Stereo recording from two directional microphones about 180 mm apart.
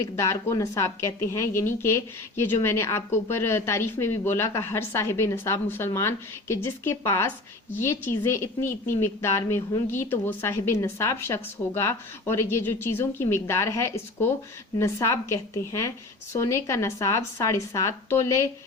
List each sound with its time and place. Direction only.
0.0 s a woman's voice: 20° left (ahead or behind)